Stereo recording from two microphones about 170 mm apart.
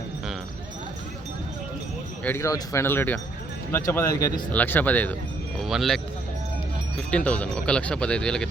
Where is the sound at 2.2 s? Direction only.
15° left (ahead or behind); by 6.0 s centre (ahead or behind).